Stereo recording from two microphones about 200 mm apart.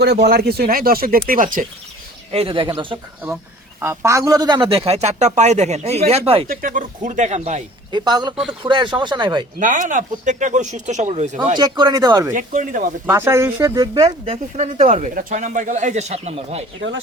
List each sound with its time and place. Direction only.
0.0 s speech: 55° right (ahead or behind)
2.3 s a man's voice: 25° right (ahead or behind)
6.5 s speech: 45° right (ahead or behind)
7.9 s a man's voice: 20° right (ahead or behind)
9.6 s speech: 40° right (ahead or behind)
11.5 s a man's voice: 20° right (ahead or behind)
12.3 s speech: 40° right (ahead or behind)
13.1 s speech: 15° right (ahead or behind); by 16.6 s 30° right (ahead or behind)